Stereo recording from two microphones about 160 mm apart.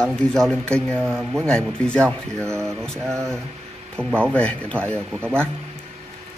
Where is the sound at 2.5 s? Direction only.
15° right (ahead or behind).